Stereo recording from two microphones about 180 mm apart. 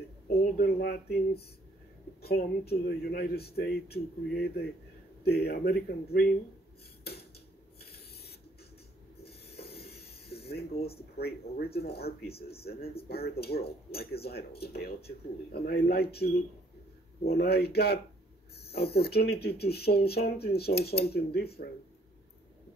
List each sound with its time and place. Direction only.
0.4 s speech: 55° left (ahead or behind)
2.2 s speech: 60° left (ahead or behind)
7.1 s a sound: 60° left (ahead or behind)
11.1 s speech: 60° left (ahead or behind)